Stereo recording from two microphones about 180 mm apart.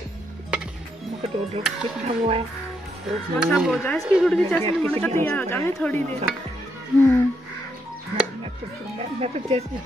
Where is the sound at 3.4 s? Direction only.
5° right (ahead or behind).